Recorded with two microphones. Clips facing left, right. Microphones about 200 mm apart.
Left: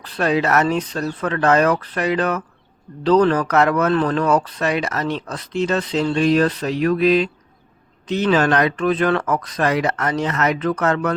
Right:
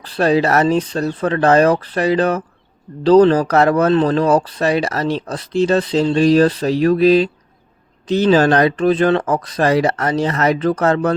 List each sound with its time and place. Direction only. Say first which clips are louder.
0.0 s speech: right 4 dB; 30° right (ahead or behind)